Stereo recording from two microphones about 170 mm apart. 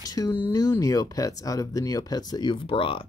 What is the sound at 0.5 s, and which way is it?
Speech, 20° left (ahead or behind).